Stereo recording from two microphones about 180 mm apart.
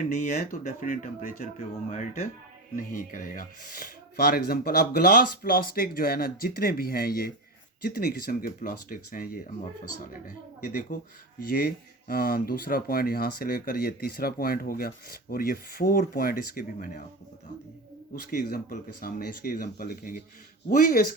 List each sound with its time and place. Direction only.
0.8 s speech: 50° left (ahead or behind)
18.1 s speech: 55° left (ahead or behind)